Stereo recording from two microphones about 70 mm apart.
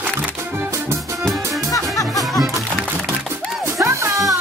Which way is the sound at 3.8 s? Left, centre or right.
Right.